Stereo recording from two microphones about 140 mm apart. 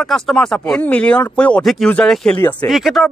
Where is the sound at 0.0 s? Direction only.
Centre (ahead or behind).